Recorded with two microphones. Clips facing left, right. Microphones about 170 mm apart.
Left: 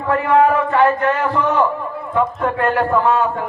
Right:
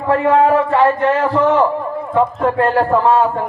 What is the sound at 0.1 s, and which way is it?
A man's voice, 30° right (ahead or behind).